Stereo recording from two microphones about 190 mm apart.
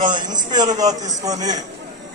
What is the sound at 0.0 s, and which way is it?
A man's voice, 25° right (ahead or behind).